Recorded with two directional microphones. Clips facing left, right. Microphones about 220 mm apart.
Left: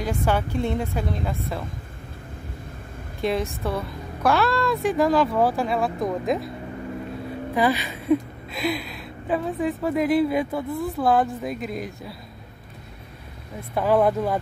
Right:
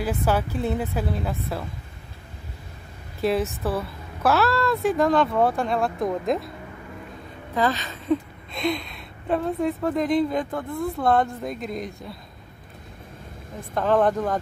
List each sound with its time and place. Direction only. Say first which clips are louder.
0.0 s a woman's voice: even; 5° right (ahead or behind)
3.2 s a woman's voice: right 2 dB; 5° right (ahead or behind)
7.5 s a woman's voice: left 2 dB; 10° left (ahead or behind)
13.7 s speech: left 1 dB; 10° left (ahead or behind)